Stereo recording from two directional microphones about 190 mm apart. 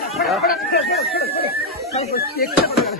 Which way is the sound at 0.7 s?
55° left (ahead or behind).